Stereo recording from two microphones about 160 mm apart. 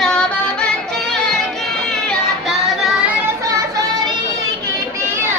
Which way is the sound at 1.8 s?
Centre (ahead or behind).